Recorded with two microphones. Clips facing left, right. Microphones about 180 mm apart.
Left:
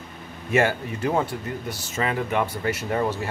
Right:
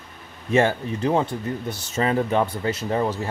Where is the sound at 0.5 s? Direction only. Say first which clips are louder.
Right 2 dB; 25° right (ahead or behind).